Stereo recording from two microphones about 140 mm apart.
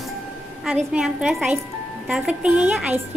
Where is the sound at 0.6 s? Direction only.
5° right (ahead or behind).